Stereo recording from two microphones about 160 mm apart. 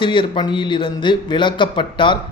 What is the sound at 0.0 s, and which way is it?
Speech, 30° left (ahead or behind).